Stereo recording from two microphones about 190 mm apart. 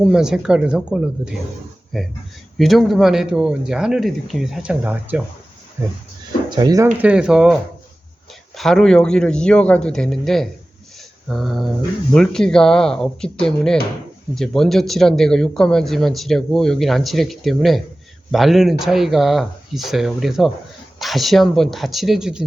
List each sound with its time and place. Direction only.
0.0 s speech: 5° right (ahead or behind)
6.6 s speech: 20° right (ahead or behind)
7.0 s speech: 5° right (ahead or behind)
8.5 s speech: centre (ahead or behind)